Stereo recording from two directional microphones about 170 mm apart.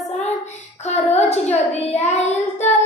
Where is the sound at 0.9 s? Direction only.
40° left (ahead or behind).